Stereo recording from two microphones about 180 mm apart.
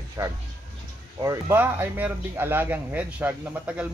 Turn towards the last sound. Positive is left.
turn(degrees=-10)  # may be behind; listen again after turning